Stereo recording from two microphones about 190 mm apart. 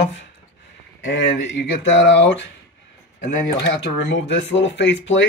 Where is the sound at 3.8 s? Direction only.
70° left (ahead or behind).